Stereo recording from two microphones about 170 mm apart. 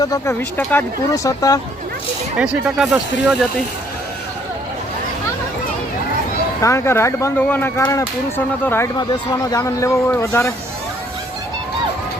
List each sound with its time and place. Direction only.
0.0 s speech: 20° left (ahead or behind)
2.4 s speech: 5° right (ahead or behind)
6.6 s a man's voice: 15° left (ahead or behind)